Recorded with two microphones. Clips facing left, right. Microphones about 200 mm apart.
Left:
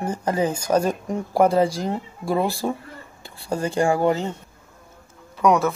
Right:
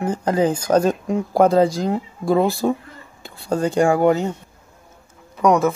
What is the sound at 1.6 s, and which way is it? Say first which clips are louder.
Speech: right 4 dB; 15° right (ahead or behind).